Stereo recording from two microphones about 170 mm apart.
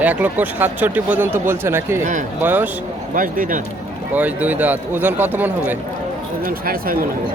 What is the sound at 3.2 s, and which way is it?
Speech, 55° right (ahead or behind).